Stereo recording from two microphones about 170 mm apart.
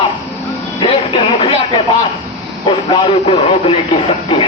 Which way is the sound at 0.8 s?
30° left (ahead or behind).